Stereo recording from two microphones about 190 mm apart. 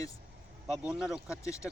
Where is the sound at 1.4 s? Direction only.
15° left (ahead or behind).